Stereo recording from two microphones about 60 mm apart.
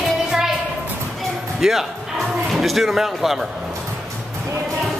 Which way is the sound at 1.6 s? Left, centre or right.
Centre.